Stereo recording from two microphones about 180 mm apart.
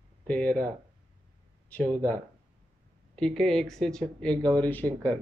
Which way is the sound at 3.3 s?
5° left (ahead or behind).